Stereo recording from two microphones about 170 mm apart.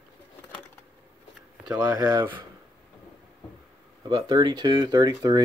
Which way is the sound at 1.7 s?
20° right (ahead or behind).